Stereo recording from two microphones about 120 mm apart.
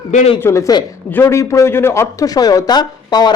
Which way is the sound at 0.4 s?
25° left (ahead or behind).